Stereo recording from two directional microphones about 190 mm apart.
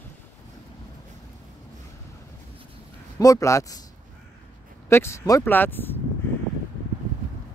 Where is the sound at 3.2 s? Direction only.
15° left (ahead or behind).